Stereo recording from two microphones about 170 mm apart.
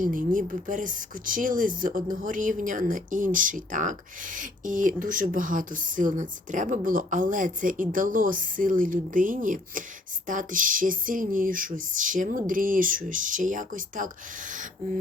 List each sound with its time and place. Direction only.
0.0 s speech: 50° right (ahead or behind)